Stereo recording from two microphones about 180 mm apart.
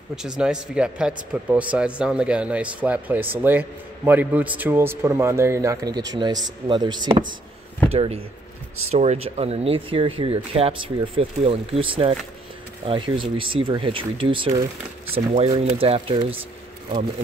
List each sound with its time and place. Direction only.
0.1 s speech: 5° right (ahead or behind); by 16.3 s 30° right (ahead or behind)